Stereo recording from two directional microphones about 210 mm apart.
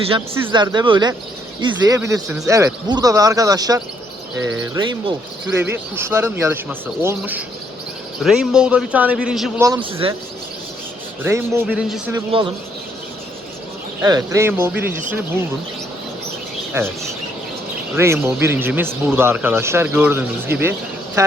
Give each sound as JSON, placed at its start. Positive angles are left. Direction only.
{"t": 0.5, "sound": "a man's voice", "side_deg": -20}
{"t": 9.6, "sound": "a man's voice", "side_deg": -15}
{"t": 10.0, "sound": "speech", "side_deg": -25}
{"t": 11.2, "sound": "a man's voice", "side_deg": -10}
{"t": 11.6, "sound": "a man's voice", "side_deg": 0}
{"t": 12.3, "sound": "speech", "side_deg": -25}
{"t": 14.0, "sound": "a man's voice", "side_deg": -15}
{"t": 16.8, "sound": "a man's voice", "side_deg": -10}
{"t": 17.9, "sound": "a man's voice", "side_deg": -10}